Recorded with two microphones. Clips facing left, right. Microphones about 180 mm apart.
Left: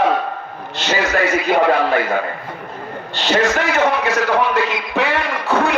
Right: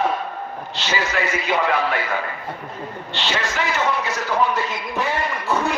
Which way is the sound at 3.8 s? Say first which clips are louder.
Left 6 dB; 70° left (ahead or behind).